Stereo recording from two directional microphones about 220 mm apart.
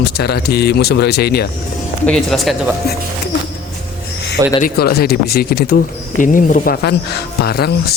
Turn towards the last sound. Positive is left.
turn(degrees=45)  # may be behind; listen again after turning